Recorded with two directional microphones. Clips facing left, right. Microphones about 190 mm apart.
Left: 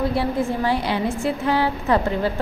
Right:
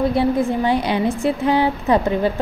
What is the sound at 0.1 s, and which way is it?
A woman's voice, 20° right (ahead or behind).